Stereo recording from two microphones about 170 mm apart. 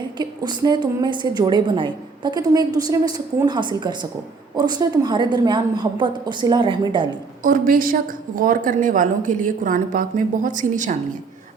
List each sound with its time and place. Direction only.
0.2 s a woman's voice: 25° right (ahead or behind)
7.4 s a woman's voice: 55° right (ahead or behind)